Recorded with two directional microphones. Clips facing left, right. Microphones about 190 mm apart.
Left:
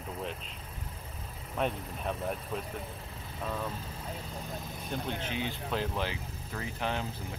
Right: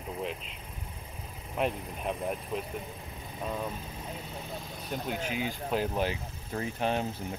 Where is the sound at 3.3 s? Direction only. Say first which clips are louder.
Right 1 dB; 15° right (ahead or behind).